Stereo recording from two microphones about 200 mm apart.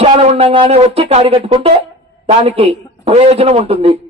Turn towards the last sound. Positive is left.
turn(degrees=-30)  # may be behind; listen again after turning